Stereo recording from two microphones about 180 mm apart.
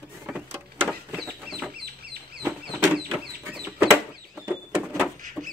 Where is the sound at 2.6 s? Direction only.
5° right (ahead or behind).